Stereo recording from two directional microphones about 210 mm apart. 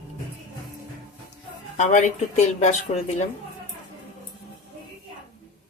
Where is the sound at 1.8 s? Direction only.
35° left (ahead or behind).